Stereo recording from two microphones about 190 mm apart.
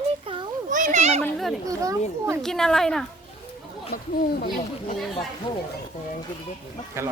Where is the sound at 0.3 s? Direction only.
30° right (ahead or behind).